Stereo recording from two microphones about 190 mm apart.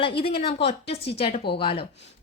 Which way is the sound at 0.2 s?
30° left (ahead or behind).